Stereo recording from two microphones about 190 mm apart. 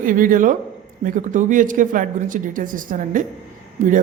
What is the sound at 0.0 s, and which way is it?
Speech, 45° right (ahead or behind).